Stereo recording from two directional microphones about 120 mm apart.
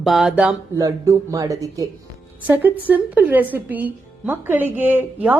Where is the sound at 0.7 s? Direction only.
25° right (ahead or behind).